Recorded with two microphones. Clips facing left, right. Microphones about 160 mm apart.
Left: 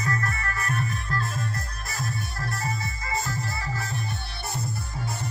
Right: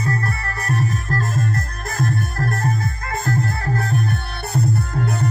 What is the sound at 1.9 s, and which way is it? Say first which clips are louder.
Music: right 10 dB; 50° right (ahead or behind).